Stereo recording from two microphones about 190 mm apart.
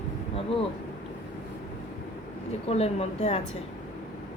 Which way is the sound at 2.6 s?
35° left (ahead or behind).